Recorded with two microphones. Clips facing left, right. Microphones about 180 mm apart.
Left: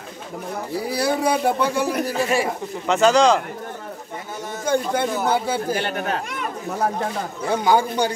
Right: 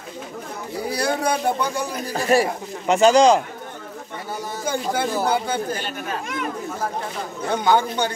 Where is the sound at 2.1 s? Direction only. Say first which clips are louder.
Right 2 dB; 40° right (ahead or behind).